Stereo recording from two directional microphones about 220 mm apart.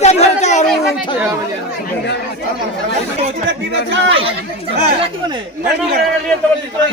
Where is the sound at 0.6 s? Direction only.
Centre (ahead or behind).